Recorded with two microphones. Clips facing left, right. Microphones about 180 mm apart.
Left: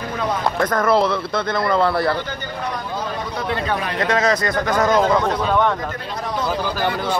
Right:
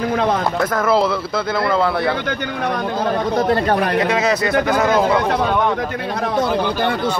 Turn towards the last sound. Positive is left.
turn(degrees=-5)  # may be behind; listen again after turning